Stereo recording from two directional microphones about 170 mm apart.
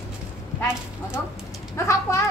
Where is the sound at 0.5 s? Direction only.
15° left (ahead or behind).